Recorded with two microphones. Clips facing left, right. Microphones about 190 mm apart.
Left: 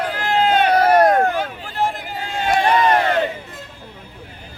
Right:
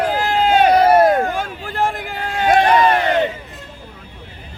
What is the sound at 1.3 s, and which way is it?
Hubbub, 50° right (ahead or behind).